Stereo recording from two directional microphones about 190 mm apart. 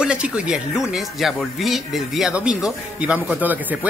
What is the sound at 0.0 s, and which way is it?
Speech, 5° right (ahead or behind).